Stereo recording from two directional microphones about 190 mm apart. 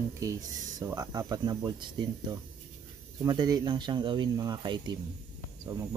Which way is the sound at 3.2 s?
20° right (ahead or behind).